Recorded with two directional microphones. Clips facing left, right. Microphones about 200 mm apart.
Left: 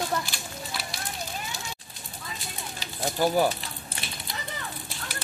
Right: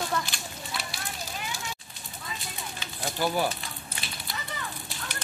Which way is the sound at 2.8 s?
40° left (ahead or behind).